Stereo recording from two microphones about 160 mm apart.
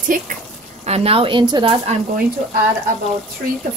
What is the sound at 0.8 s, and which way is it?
Speech, 40° right (ahead or behind).